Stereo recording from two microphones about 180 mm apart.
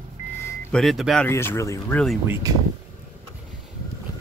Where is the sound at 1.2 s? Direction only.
15° left (ahead or behind).